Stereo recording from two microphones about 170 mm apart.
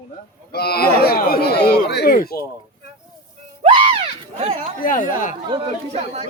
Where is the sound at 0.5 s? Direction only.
65° left (ahead or behind).